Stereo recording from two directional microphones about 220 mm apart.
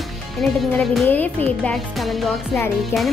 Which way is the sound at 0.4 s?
Centre (ahead or behind).